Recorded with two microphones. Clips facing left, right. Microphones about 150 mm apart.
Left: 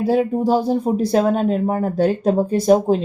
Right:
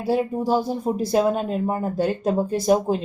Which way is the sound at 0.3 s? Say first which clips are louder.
Left 4 dB; 20° left (ahead or behind).